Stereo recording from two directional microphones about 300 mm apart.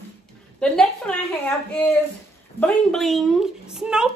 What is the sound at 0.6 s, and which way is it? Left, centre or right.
A woman's voice, centre.